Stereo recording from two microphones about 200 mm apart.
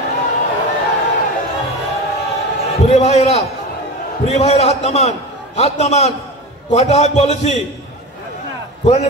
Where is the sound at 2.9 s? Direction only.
35° left (ahead or behind).